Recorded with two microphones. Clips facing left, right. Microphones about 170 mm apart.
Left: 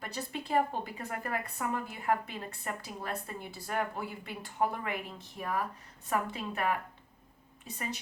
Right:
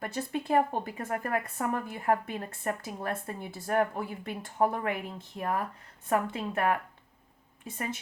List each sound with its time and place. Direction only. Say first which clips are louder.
0.0 s a woman's voice: right 6 dB; 50° right (ahead or behind)